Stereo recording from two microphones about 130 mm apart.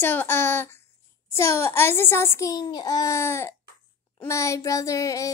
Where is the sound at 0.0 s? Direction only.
15° left (ahead or behind).